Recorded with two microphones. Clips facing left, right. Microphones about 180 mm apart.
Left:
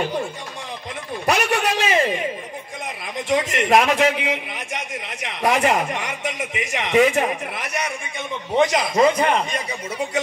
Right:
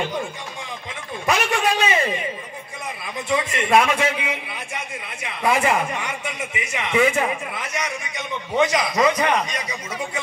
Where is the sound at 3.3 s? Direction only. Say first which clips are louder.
Left 2 dB; 90° left.